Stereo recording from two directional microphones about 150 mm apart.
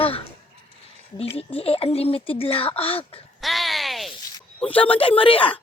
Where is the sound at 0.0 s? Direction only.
40° left (ahead or behind).